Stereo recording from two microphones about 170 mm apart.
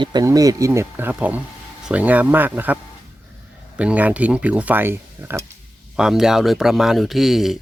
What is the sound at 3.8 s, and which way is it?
Speech, 10° right (ahead or behind).